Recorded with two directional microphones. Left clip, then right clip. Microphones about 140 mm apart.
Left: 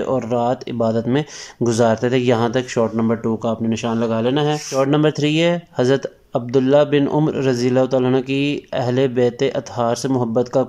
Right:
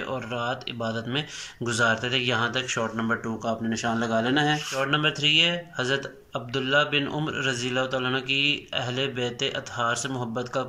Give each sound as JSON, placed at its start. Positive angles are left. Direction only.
{"t": 0.0, "sound": "speech", "side_deg": 45}
{"t": 3.6, "sound": "speech", "side_deg": 15}
{"t": 4.7, "sound": "speech", "side_deg": 45}